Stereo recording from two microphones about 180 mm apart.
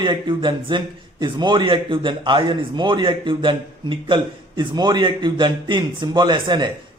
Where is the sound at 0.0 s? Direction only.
25° right (ahead or behind).